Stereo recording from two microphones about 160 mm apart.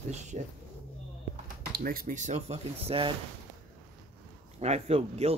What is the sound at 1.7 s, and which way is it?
Speech, 65° right (ahead or behind).